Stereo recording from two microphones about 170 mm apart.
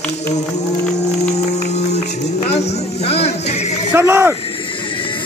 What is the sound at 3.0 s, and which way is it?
Music, 35° left (ahead or behind).